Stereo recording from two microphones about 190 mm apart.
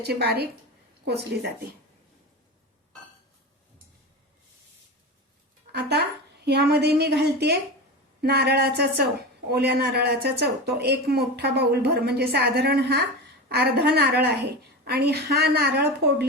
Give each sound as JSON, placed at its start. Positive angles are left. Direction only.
{"t": 0.0, "sound": "a woman's voice", "side_deg": -60}
{"t": 5.7, "sound": "a woman's voice", "side_deg": -60}